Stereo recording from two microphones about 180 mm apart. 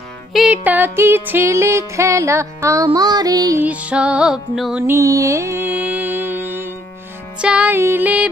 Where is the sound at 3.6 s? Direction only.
5° right (ahead or behind).